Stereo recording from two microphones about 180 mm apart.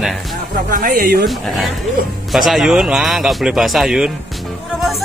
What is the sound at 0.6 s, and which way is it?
Speech, 50° right (ahead or behind).